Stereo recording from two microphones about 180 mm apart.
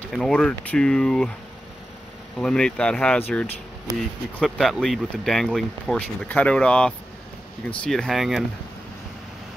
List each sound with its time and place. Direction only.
0.1 s speech: 5° left (ahead or behind)
2.3 s speech: 5° left (ahead or behind)
3.9 s speech: 20° right (ahead or behind)
4.4 s speech: centre (ahead or behind)